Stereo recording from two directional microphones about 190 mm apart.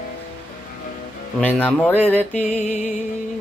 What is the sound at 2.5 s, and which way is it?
Music, 40° left (ahead or behind).